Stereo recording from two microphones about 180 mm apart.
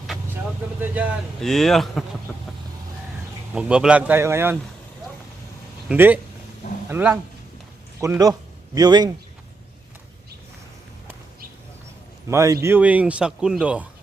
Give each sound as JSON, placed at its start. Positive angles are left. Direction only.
{"t": 0.8, "sound": "speech", "side_deg": -10}
{"t": 3.5, "sound": "a man's voice", "side_deg": -5}
{"t": 5.9, "sound": "a man's voice", "side_deg": -10}
{"t": 8.2, "sound": "a man's voice", "side_deg": -20}
{"t": 12.3, "sound": "a man's voice", "side_deg": -15}